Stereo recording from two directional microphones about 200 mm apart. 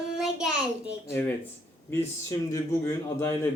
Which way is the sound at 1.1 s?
10° left (ahead or behind).